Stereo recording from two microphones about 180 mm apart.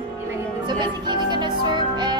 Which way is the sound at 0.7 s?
25° right (ahead or behind).